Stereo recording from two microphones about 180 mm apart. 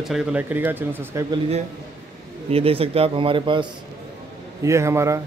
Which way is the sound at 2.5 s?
30° right (ahead or behind).